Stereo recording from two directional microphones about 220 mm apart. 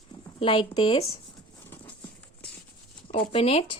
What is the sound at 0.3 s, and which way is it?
Speech, 25° left (ahead or behind).